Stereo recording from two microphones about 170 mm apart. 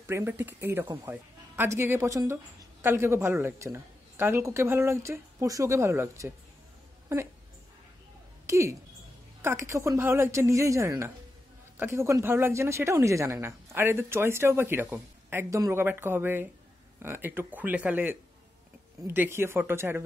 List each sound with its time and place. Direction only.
0.0 s speech: 15° right (ahead or behind)
8.5 s speech: 15° right (ahead or behind)